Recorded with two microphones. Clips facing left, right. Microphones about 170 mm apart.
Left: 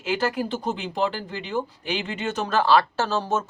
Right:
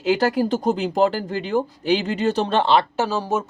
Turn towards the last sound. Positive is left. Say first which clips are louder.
# right 2 dB
turn(degrees=-10)  # may be behind; listen again after turning